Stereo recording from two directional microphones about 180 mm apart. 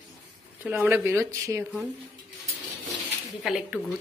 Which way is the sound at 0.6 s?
10° right (ahead or behind).